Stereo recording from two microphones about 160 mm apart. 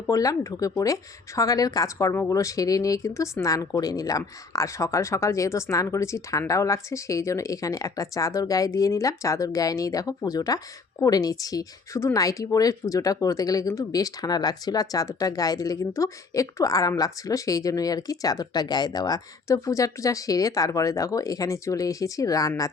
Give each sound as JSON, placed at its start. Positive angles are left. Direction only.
{"t": 0.1, "sound": "speech", "side_deg": 20}